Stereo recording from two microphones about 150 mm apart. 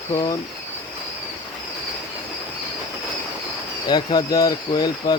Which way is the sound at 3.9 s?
30° left (ahead or behind).